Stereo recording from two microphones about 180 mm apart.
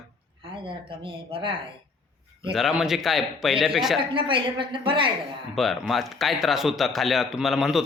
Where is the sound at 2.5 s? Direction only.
Centre (ahead or behind).